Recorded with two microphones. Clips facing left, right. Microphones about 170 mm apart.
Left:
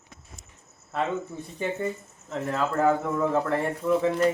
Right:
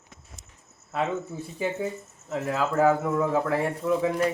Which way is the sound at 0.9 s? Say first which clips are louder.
Even; 5° right (ahead or behind).